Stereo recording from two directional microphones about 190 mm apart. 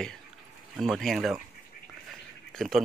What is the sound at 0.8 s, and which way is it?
Speech, centre (ahead or behind).